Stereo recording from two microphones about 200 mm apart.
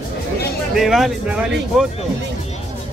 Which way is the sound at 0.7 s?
Centre (ahead or behind).